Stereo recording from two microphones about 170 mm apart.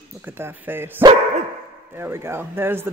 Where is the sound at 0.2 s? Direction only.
10° right (ahead or behind).